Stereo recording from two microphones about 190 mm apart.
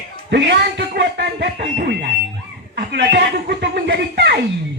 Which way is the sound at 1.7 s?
55° right (ahead or behind).